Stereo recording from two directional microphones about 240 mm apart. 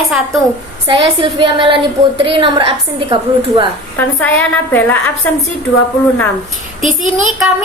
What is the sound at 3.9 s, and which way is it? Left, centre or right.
A woman's voice, centre.